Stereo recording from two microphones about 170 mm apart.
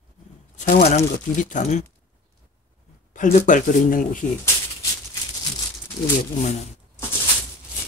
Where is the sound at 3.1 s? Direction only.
45° left (ahead or behind).